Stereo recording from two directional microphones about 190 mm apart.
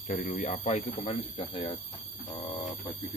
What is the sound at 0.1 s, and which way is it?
Speech, 40° left (ahead or behind).